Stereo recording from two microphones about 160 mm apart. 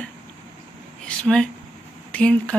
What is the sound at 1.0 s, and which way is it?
Speech, 5° left (ahead or behind).